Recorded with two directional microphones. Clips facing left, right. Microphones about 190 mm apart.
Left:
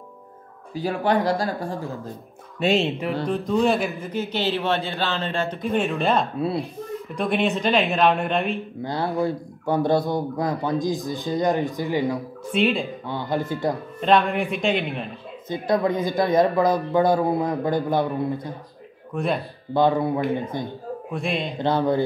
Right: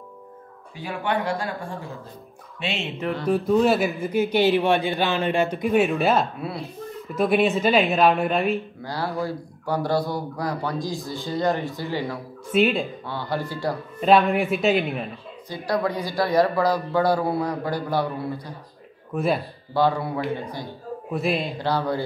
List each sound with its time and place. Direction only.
0.7 s speech: 35° left (ahead or behind)
3.3 s speech: 5° right (ahead or behind)
8.8 s speech: 20° left (ahead or behind)
12.5 s speech: centre (ahead or behind)
13.0 s speech: 20° left (ahead or behind)
14.0 s speech: 5° right (ahead or behind)
15.4 s speech: 20° left (ahead or behind)
19.1 s speech: 5° right (ahead or behind)
19.7 s speech: 20° left (ahead or behind)
21.1 s speech: 5° right (ahead or behind)
21.5 s speech: 20° left (ahead or behind)